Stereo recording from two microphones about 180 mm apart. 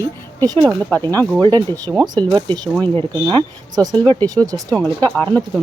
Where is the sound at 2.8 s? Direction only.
10° left (ahead or behind).